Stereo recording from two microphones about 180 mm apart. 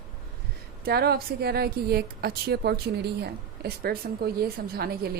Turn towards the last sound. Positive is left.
turn(degrees=-60)  # may be behind; listen again after turning